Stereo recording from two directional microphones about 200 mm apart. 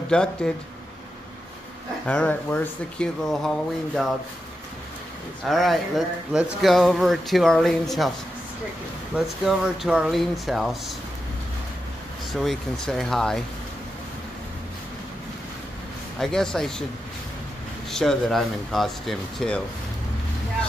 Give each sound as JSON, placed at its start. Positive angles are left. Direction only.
{"t": 0.1, "sound": "speech", "side_deg": 5}
{"t": 2.0, "sound": "speech", "side_deg": 5}
{"t": 5.5, "sound": "speech", "side_deg": 0}
{"t": 9.1, "sound": "speech", "side_deg": -5}
{"t": 12.3, "sound": "speech", "side_deg": 0}
{"t": 16.2, "sound": "speech", "side_deg": 0}
{"t": 17.9, "sound": "speech", "side_deg": 0}